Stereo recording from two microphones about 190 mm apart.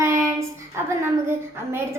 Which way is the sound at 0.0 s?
15° right (ahead or behind).